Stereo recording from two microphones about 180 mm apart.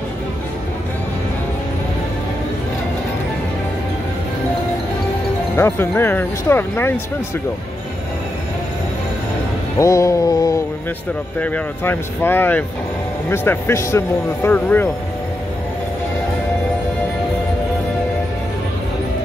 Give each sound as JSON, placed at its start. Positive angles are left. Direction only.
{"t": 5.6, "sound": "speech", "side_deg": 15}
{"t": 9.8, "sound": "speech", "side_deg": 15}
{"t": 11.3, "sound": "speech", "side_deg": 10}